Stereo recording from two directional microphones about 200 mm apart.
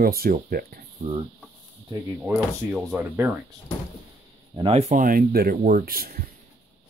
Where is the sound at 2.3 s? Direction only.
10° right (ahead or behind).